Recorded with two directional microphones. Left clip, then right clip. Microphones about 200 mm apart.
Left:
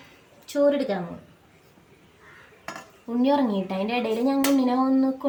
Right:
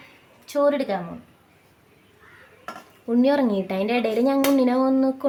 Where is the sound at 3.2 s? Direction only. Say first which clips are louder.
Right 1 dB; 40° right (ahead or behind).